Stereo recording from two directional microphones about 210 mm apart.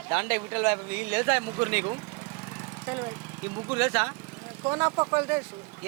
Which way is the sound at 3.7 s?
10° right (ahead or behind).